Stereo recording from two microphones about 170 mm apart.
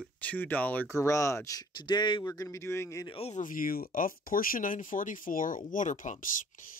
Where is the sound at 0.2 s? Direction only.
10° left (ahead or behind).